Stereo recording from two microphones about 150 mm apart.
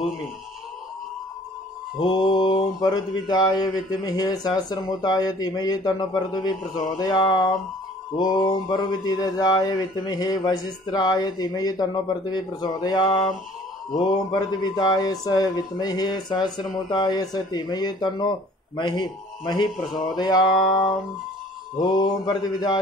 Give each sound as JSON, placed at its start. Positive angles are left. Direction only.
{"t": 2.0, "sound": "mantra", "side_deg": 30}
{"t": 18.8, "sound": "a man's voice", "side_deg": 30}
{"t": 20.2, "sound": "mantra", "side_deg": 30}